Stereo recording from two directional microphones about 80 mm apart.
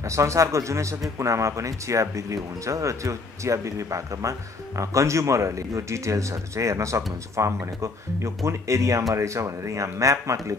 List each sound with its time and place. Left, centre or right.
0.0 s speech: right